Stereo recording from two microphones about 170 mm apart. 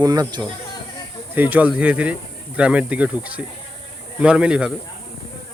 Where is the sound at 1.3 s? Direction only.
10° right (ahead or behind).